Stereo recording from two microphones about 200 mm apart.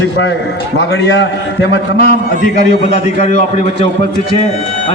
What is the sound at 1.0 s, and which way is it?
A man's voice, 60° left (ahead or behind).